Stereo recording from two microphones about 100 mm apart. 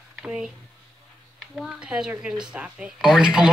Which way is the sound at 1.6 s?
5° right (ahead or behind).